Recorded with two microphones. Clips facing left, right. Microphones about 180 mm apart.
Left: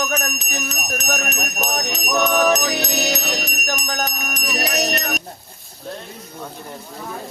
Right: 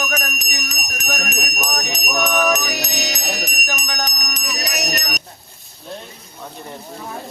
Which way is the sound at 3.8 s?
20° right (ahead or behind).